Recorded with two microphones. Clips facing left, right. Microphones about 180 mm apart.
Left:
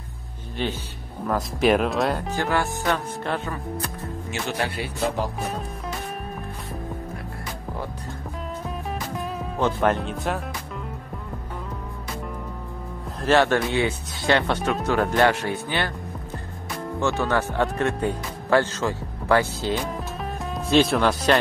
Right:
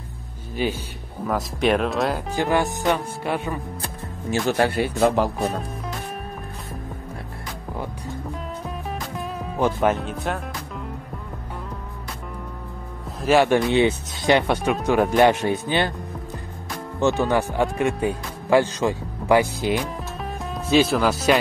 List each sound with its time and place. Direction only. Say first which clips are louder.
0.6 s speech: right 3 dB; 10° right (ahead or behind)
2.3 s speech: right 3 dB; 15° right (ahead or behind)
4.3 s speech: right 8 dB; 45° right (ahead or behind)
8.6 s music: even; centre (ahead or behind)
9.6 s speech: right 1 dB; 5° right (ahead or behind)
13.2 s speech: right 2 dB; 10° right (ahead or behind)
17.2 s speech: right 2 dB; 15° right (ahead or behind)
20.2 s music: even; centre (ahead or behind)